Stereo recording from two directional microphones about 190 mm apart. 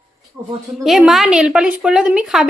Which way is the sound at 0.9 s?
Centre (ahead or behind).